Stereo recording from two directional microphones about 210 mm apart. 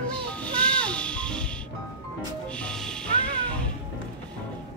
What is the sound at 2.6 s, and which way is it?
Music, 5° left (ahead or behind).